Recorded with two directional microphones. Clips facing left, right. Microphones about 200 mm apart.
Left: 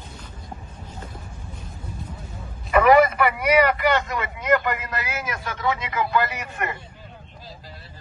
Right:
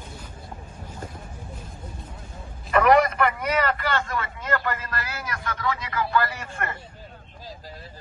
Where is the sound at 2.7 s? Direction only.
Centre (ahead or behind); by 6.7 s 20° left (ahead or behind).